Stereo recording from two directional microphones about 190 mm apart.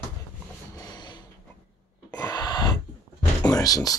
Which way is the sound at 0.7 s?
20° left (ahead or behind).